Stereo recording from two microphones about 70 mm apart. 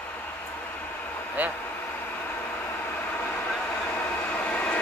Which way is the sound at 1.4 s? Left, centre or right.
Right.